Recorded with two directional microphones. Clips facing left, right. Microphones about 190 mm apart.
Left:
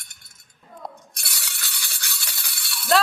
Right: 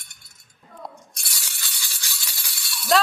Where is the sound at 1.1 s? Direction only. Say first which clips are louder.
Left 3 dB; 60° left (ahead or behind).